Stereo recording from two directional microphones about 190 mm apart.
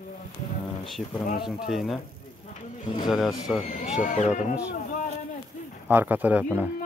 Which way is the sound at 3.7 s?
40° left (ahead or behind).